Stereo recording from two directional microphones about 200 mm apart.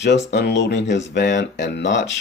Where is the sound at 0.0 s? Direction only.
60° left (ahead or behind).